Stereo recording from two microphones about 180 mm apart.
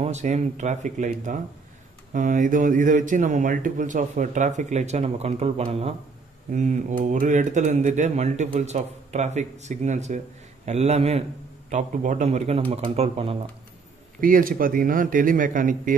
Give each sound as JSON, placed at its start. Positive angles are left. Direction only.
{"t": 0.0, "sound": "speech", "side_deg": -40}
{"t": 14.2, "sound": "speech", "side_deg": -50}